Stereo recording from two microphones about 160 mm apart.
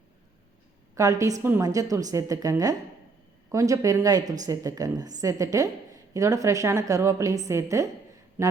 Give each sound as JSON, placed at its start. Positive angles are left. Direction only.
{"t": 0.9, "sound": "a woman's voice", "side_deg": -20}